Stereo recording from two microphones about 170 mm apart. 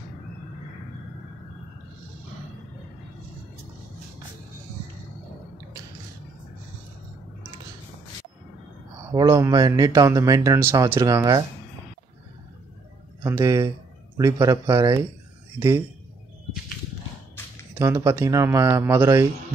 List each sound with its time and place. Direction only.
9.1 s a man's voice: 20° right (ahead or behind)
13.2 s a man's voice: 15° right (ahead or behind)
17.7 s speech: 15° right (ahead or behind)